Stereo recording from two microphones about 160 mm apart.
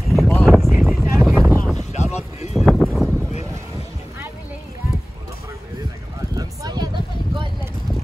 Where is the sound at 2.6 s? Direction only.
Centre (ahead or behind).